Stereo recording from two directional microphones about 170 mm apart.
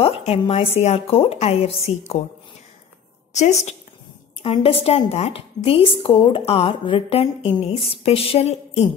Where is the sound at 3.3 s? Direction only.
40° left (ahead or behind).